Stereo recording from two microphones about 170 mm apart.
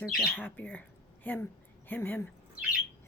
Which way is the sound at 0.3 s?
10° left (ahead or behind).